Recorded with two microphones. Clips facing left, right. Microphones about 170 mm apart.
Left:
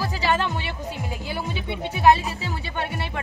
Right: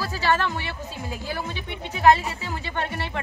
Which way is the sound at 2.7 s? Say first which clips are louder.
Right 1 dB; 15° left (ahead or behind).